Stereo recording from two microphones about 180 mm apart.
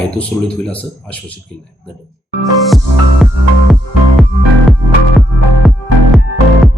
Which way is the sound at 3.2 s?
Centre (ahead or behind).